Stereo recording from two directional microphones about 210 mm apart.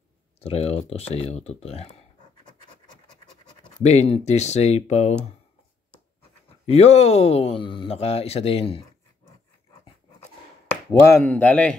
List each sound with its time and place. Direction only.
0.4 s speech: 30° left (ahead or behind)
2.4 s scratch: 20° left (ahead or behind)
3.6 s speech: 30° left (ahead or behind)
6.6 s speech: 30° left (ahead or behind)
10.9 s speech: 15° left (ahead or behind)